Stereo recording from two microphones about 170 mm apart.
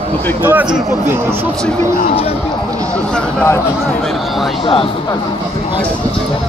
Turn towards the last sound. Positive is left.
turn(degrees=30)  # may be behind; listen again after turning